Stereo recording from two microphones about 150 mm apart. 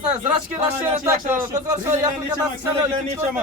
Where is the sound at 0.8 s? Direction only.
15° right (ahead or behind).